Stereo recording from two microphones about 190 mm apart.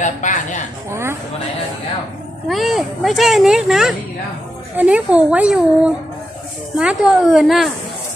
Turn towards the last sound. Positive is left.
turn(degrees=0)  # may be behind; listen again after turning